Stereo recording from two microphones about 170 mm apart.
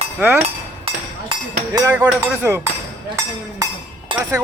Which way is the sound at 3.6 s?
20° right (ahead or behind).